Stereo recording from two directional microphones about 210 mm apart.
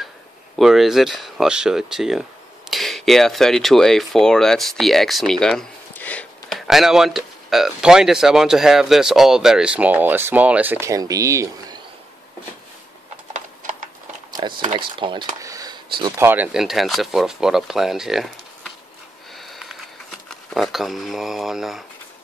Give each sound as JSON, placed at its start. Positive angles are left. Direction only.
{"t": 0.6, "sound": "speech", "side_deg": 0}
{"t": 13.6, "sound": "a sound", "side_deg": -40}
{"t": 14.3, "sound": "speech", "side_deg": -20}
{"t": 19.3, "sound": "sniff", "side_deg": 0}
{"t": 20.2, "sound": "speech", "side_deg": 0}